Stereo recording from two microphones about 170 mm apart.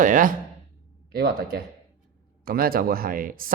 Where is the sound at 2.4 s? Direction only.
60° right (ahead or behind).